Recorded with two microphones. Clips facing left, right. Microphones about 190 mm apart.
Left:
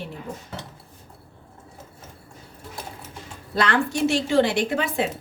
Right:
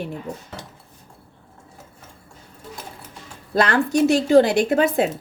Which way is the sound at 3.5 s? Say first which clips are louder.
Right 4 dB; 45° right (ahead or behind).